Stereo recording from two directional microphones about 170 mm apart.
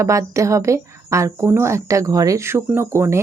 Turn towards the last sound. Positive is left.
turn(degrees=-15)  # may be behind; listen again after turning